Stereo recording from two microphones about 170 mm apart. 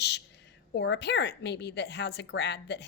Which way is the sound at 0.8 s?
90° left.